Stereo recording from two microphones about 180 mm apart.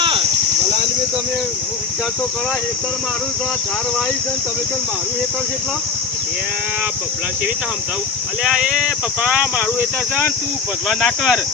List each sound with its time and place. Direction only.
0.0 s cricket: 30° right (ahead or behind)
8.4 s speech: 5° right (ahead or behind)